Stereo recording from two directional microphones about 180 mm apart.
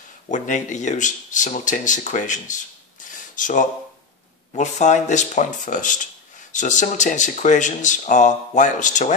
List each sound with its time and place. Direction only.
0.3 s speech: 45° left (ahead or behind)